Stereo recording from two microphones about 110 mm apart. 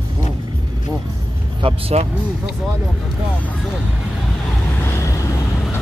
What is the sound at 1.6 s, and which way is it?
Speech, 60° right (ahead or behind).